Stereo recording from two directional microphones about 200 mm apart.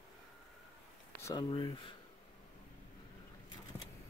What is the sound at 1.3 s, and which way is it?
Speech, 20° left (ahead or behind).